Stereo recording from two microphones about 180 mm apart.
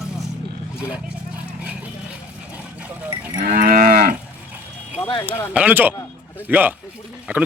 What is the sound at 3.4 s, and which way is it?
Moo, 55° right (ahead or behind).